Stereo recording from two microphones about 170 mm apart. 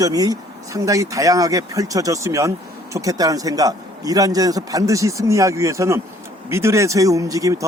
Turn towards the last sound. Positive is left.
turn(degrees=-20)  # may be behind; listen again after turning